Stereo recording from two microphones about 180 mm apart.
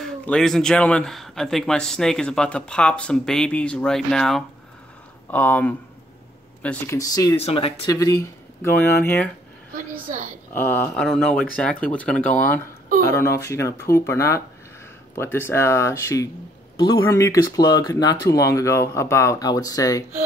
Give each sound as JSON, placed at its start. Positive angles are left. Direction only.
{"t": 0.0, "sound": "speech", "side_deg": 0}
{"t": 7.0, "sound": "speech", "side_deg": 20}
{"t": 7.3, "sound": "speech", "side_deg": 35}
{"t": 7.8, "sound": "speech", "side_deg": 20}
{"t": 9.8, "sound": "a woman's voice", "side_deg": -50}
{"t": 10.5, "sound": "speech", "side_deg": 10}